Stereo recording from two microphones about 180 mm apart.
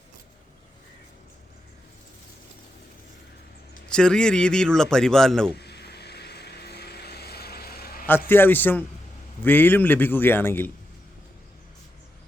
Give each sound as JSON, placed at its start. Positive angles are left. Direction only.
{"t": 3.8, "sound": "a man's voice", "side_deg": 5}
{"t": 5.5, "sound": "vehicle", "side_deg": 65}
{"t": 8.3, "sound": "a man's voice", "side_deg": 10}